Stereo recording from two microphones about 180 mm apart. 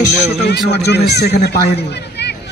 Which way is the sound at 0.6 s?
65° left (ahead or behind).